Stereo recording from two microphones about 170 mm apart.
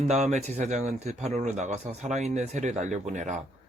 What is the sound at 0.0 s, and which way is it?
Speech, 40° right (ahead or behind).